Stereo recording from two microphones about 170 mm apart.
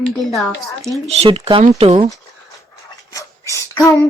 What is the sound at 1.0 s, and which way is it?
Speech, 35° right (ahead or behind).